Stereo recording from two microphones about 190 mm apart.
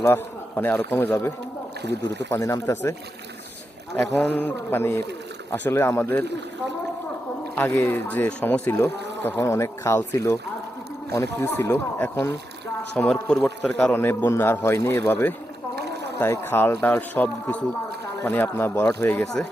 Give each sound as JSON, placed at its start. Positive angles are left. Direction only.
{"t": 0.0, "sound": "a man's voice", "side_deg": 10}
{"t": 1.8, "sound": "speech", "side_deg": -60}
{"t": 2.3, "sound": "a man's voice", "side_deg": 15}
{"t": 4.4, "sound": "a man's voice", "side_deg": 10}
{"t": 7.5, "sound": "a man's voice", "side_deg": 15}
{"t": 11.3, "sound": "a man's voice", "side_deg": 10}
{"t": 15.7, "sound": "a sound", "side_deg": -60}
{"t": 16.1, "sound": "a man's voice", "side_deg": 10}